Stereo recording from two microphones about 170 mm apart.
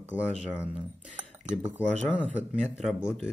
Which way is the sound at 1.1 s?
10° right (ahead or behind).